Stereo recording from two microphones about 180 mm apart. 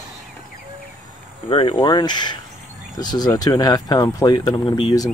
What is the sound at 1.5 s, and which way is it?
Speech, 30° left (ahead or behind).